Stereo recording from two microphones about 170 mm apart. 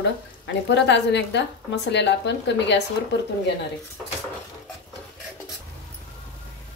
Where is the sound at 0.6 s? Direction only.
90° left.